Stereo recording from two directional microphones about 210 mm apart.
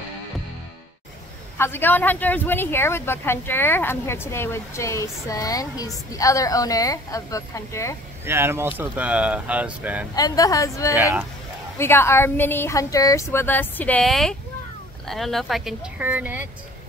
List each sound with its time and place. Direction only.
1.6 s speech: 10° left (ahead or behind)
8.3 s speech: 10° right (ahead or behind)
10.1 s speech: 15° left (ahead or behind)
11.0 s speech: 10° right (ahead or behind)
11.8 s speech: 10° left (ahead or behind); by 16.4 s 10° right (ahead or behind)